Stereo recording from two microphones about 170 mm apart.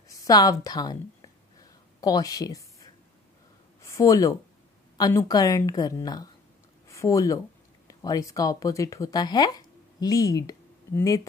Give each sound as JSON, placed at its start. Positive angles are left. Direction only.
{"t": 0.1, "sound": "a woman's voice", "side_deg": 20}